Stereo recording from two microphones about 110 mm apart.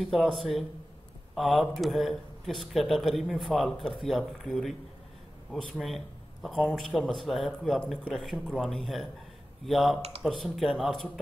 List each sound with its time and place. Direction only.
0.0 s a man's voice: centre (ahead or behind)